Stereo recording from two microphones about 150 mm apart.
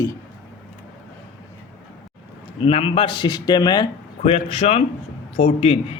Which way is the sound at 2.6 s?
40° left (ahead or behind).